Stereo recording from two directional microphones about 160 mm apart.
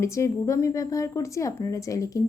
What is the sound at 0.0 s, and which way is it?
A woman's voice, 20° left (ahead or behind).